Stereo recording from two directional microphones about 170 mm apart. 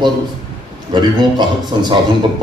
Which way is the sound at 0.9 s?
25° right (ahead or behind).